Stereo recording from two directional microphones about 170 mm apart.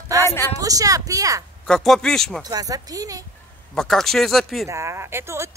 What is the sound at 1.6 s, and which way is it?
Speech, centre (ahead or behind).